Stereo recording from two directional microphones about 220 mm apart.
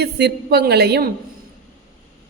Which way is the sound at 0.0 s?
50° right (ahead or behind).